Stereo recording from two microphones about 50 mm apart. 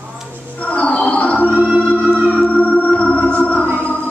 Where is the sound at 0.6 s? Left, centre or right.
Left.